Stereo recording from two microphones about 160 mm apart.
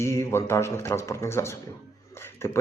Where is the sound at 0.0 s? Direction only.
15° left (ahead or behind).